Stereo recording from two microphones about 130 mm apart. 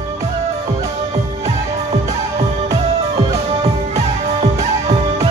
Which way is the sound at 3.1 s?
50° right (ahead or behind).